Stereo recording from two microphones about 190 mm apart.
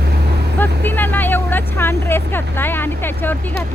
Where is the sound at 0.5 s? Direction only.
10° left (ahead or behind).